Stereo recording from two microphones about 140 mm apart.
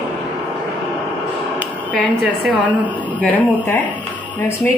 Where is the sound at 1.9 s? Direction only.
10° left (ahead or behind).